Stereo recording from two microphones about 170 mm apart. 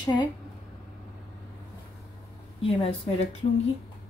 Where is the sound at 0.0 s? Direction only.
25° left (ahead or behind).